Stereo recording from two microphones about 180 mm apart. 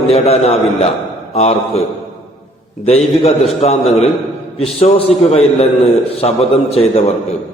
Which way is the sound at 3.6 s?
35° left (ahead or behind).